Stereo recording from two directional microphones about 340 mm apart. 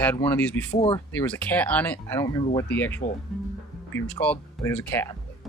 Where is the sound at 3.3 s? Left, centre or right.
Centre.